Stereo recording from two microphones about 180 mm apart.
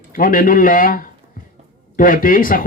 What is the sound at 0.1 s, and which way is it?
Speech, 50° left (ahead or behind).